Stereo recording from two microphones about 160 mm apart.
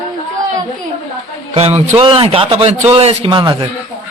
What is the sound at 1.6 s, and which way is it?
A man's voice, 40° right (ahead or behind).